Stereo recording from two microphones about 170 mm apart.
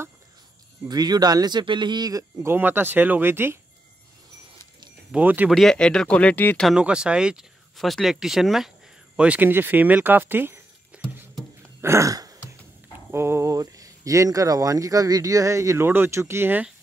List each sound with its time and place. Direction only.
0.8 s speech: 25° right (ahead or behind)
5.1 s speech: 10° right (ahead or behind)
5.5 s speech: centre (ahead or behind)
11.8 s throat clearing: 15° right (ahead or behind)
13.1 s speech: 15° right (ahead or behind)